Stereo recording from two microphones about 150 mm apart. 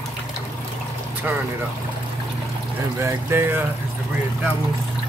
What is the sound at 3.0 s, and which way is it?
Speech, 15° right (ahead or behind).